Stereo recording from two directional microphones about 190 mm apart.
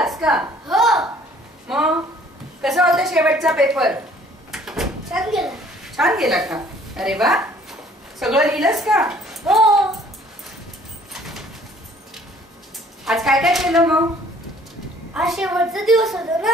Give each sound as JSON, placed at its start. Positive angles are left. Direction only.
{"t": 0.0, "sound": "a sound", "side_deg": -5}
{"t": 1.7, "sound": "a child's voice", "side_deg": -5}
{"t": 13.0, "sound": "a child's voice", "side_deg": 0}
{"t": 15.1, "sound": "a child's voice", "side_deg": 0}